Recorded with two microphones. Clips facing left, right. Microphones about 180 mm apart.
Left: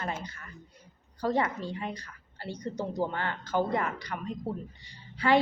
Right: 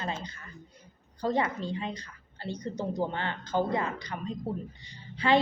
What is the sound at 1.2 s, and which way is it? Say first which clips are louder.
A woman's voice: even; 20° right (ahead or behind).